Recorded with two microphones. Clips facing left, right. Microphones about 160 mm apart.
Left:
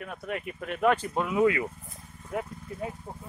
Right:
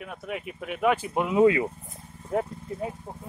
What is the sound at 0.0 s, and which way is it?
Speech, 5° right (ahead or behind).